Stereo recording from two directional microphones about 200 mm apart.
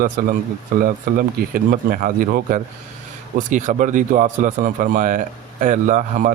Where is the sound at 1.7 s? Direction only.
45° right (ahead or behind).